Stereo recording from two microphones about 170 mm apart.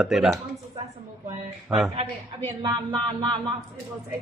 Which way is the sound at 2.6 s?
25° right (ahead or behind).